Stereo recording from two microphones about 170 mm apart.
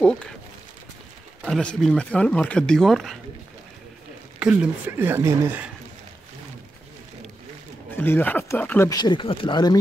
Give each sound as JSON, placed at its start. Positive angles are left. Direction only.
{"t": 1.4, "sound": "speech", "side_deg": 5}
{"t": 4.4, "sound": "speech", "side_deg": -10}
{"t": 7.9, "sound": "speech", "side_deg": 10}
{"t": 8.9, "sound": "speech", "side_deg": 25}